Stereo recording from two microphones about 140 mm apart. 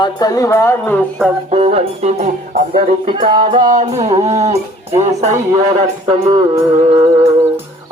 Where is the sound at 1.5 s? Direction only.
50° right (ahead or behind).